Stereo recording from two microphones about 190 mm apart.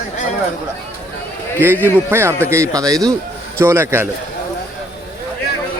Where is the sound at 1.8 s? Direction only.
15° right (ahead or behind).